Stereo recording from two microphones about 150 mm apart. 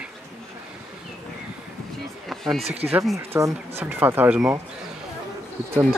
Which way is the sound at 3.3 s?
15° right (ahead or behind).